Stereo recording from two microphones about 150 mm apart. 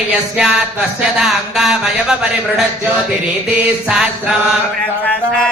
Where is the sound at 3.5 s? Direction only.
10° right (ahead or behind).